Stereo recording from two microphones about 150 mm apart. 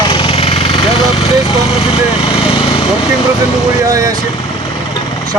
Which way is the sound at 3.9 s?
25° right (ahead or behind).